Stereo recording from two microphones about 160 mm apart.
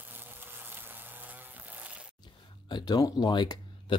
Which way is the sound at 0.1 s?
10° right (ahead or behind).